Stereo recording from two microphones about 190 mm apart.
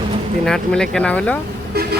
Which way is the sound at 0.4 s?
5° left (ahead or behind).